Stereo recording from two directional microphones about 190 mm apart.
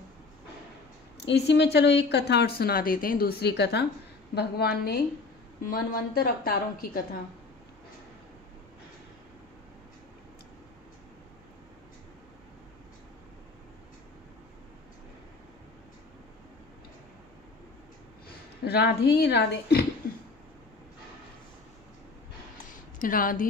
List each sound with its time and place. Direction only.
1.2 s a woman's voice: 60° left (ahead or behind)
18.6 s a woman's voice: 60° left (ahead or behind)
22.9 s a woman's voice: 45° left (ahead or behind)